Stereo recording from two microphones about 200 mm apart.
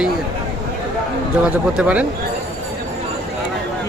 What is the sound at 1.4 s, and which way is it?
Speech, 5° right (ahead or behind).